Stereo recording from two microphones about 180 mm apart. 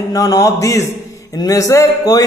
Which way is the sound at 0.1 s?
20° left (ahead or behind).